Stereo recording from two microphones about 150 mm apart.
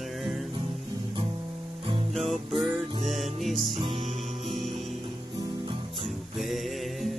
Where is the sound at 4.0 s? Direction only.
50° right (ahead or behind).